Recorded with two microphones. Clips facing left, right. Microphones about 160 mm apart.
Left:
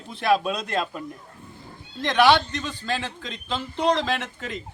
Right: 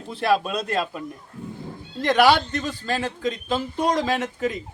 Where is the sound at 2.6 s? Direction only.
40° right (ahead or behind).